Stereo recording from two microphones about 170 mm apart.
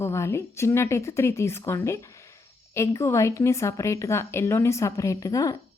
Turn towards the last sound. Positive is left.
turn(degrees=20)  # may be behind; listen again after turning